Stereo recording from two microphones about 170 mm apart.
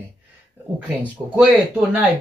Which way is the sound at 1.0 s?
10° right (ahead or behind).